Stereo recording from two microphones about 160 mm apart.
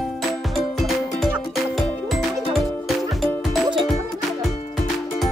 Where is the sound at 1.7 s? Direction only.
Centre (ahead or behind).